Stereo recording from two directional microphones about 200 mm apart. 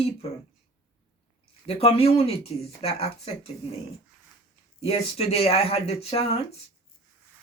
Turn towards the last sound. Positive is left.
turn(degrees=30)  # may be behind; listen again after turning